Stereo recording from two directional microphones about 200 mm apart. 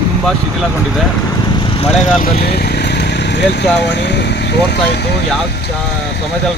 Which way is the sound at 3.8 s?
60° left (ahead or behind).